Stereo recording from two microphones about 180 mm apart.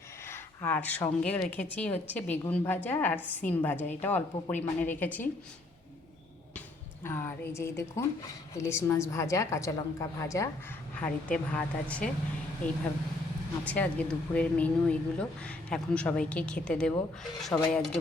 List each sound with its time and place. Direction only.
0.3 s speech: 10° left (ahead or behind)
3.2 s a woman's voice: 10° right (ahead or behind)
3.4 s speech: 10° left (ahead or behind)
7.0 s speech: 15° left (ahead or behind)
13.7 s speech: 5° left (ahead or behind)